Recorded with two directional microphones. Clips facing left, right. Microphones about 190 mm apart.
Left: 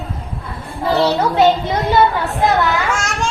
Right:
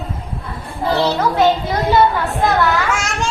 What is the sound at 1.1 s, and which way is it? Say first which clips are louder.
Speech: left 1 dB; 20° left (ahead or behind).